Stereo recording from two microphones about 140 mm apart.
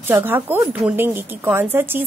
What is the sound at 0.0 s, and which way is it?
A woman's voice, 15° right (ahead or behind).